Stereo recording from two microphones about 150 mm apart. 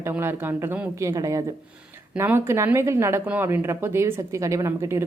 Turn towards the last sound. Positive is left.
turn(degrees=-20)  # may be behind; listen again after turning